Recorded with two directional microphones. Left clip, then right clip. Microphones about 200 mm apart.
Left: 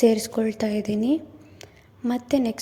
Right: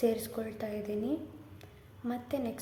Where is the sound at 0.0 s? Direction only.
40° left (ahead or behind).